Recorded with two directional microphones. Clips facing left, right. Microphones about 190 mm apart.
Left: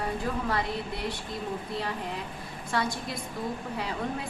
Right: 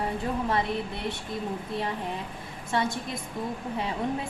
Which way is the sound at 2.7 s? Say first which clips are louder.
Right 2 dB; 25° right (ahead or behind).